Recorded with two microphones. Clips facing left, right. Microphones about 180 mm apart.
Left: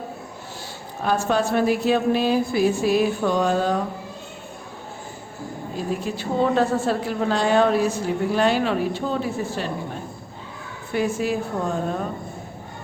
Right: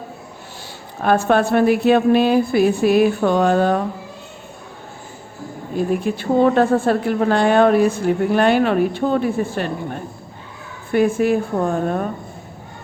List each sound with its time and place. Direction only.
1.0 s a woman's voice: 60° right (ahead or behind)
5.7 s a woman's voice: 55° right (ahead or behind)